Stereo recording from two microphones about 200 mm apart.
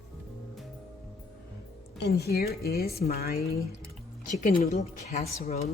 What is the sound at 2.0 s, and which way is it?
A woman's voice, 50° left (ahead or behind).